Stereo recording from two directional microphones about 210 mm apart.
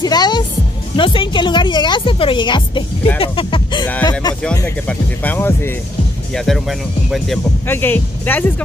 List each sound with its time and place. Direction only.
0.0 s speech: 20° left (ahead or behind)
4.8 s speech: 10° left (ahead or behind)